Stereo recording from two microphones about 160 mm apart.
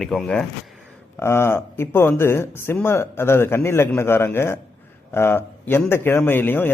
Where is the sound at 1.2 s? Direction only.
15° left (ahead or behind).